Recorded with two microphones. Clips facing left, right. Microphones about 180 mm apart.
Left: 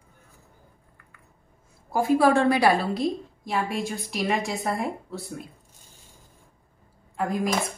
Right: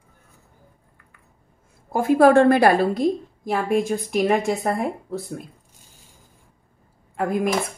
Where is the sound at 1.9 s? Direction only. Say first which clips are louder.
Right 5 dB; 55° right (ahead or behind).